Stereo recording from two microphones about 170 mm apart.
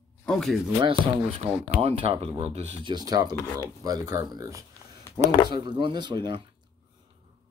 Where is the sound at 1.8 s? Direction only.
35° right (ahead or behind).